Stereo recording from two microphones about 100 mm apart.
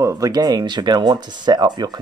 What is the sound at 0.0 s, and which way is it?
Speech, 40° right (ahead or behind).